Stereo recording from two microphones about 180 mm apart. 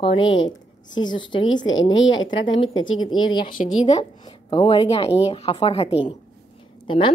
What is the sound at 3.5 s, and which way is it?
Speech, 45° left (ahead or behind).